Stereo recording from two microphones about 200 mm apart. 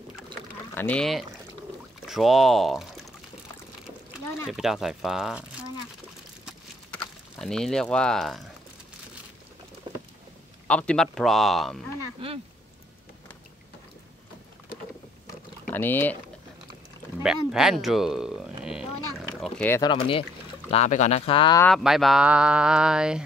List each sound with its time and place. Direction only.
0.3 s pour: 5° left (ahead or behind)
2.0 s speech: centre (ahead or behind)
4.5 s speech: centre (ahead or behind)
7.3 s speech: centre (ahead or behind)
9.9 s boat: 20° right (ahead or behind)
10.7 s speech: 5° left (ahead or behind)
12.2 s speech: 30° right (ahead or behind)
15.6 s speech: 10° left (ahead or behind)
17.2 s speech: 5° right (ahead or behind)
18.6 s a sound: 5° right (ahead or behind)
19.4 s speech: 10° left (ahead or behind)
19.9 s speech: 25° left (ahead or behind)
21.7 s speech: centre (ahead or behind)